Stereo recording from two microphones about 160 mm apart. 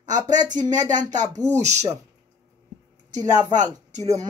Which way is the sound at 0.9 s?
50° right (ahead or behind).